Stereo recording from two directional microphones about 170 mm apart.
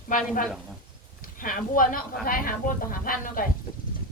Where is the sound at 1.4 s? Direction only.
55° left (ahead or behind).